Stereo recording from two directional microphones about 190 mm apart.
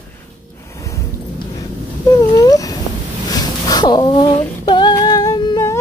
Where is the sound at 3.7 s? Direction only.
20° left (ahead or behind).